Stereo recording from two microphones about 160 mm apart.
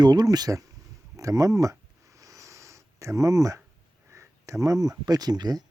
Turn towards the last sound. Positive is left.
turn(degrees=-25)  # may be behind; listen again after turning